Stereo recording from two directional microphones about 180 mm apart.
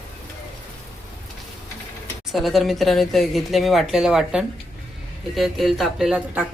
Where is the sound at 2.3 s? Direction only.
Centre (ahead or behind).